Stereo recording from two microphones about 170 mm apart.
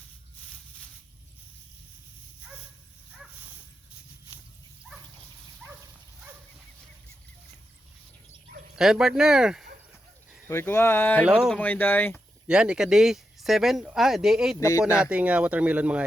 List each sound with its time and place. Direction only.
8.7 s speech: 5° right (ahead or behind)
10.5 s speech: 15° left (ahead or behind)
11.3 s speech: 5° right (ahead or behind)
11.5 s speech: 10° left (ahead or behind)
12.5 s speech: 5° right (ahead or behind)
14.6 s speech: 20° left (ahead or behind)
14.8 s speech: 5° right (ahead or behind)